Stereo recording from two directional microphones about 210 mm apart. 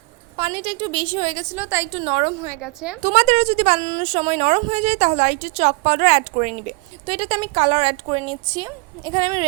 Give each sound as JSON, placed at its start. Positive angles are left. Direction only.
{"t": 0.3, "sound": "speech", "side_deg": -25}
{"t": 1.5, "sound": "a woman's voice", "side_deg": -10}
{"t": 1.9, "sound": "speech", "side_deg": -25}
{"t": 2.6, "sound": "a woman's voice", "side_deg": -5}
{"t": 3.0, "sound": "a woman's voice", "side_deg": -35}